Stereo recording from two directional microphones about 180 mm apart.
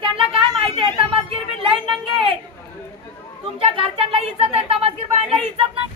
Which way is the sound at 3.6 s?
35° right (ahead or behind).